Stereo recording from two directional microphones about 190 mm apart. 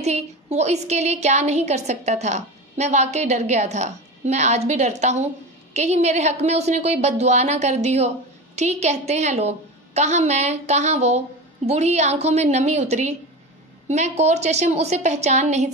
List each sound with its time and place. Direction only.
0.0 s a woman's voice: 35° right (ahead or behind)